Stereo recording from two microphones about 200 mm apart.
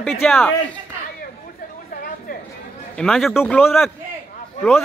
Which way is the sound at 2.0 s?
45° left (ahead or behind).